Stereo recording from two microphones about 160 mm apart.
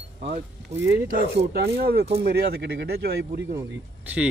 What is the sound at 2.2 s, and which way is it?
Speech, 75° right (ahead or behind).